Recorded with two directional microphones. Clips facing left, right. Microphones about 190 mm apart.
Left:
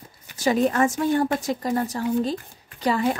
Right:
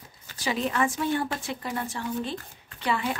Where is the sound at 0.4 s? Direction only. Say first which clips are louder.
Left 7 dB; 45° left (ahead or behind).